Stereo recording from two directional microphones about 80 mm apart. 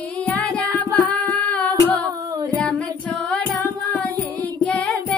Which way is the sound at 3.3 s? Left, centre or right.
Centre.